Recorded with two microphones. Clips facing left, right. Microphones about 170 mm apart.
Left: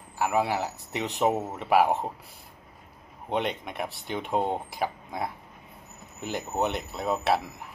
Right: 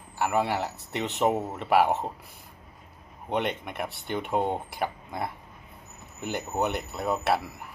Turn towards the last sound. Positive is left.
turn(degrees=0)  # may be behind; listen again after turning